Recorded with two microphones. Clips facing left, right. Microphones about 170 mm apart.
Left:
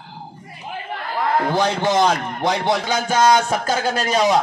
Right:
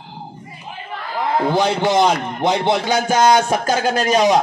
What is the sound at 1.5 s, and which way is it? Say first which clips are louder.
A man's voice: right 2 dB; 15° right (ahead or behind).